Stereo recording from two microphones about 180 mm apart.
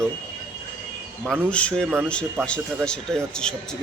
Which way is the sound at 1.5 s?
5° left (ahead or behind).